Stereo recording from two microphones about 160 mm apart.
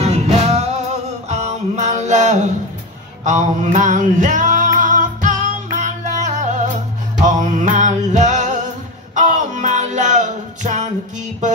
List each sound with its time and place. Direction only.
0.0 s music: 40° right (ahead or behind)